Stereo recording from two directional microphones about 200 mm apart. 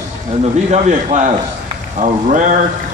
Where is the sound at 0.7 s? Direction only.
35° right (ahead or behind).